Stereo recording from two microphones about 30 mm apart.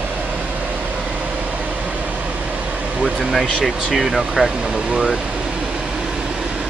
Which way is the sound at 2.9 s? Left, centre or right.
Right.